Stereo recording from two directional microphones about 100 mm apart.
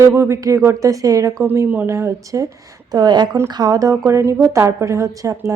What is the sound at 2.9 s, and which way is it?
A woman's voice, 45° right (ahead or behind).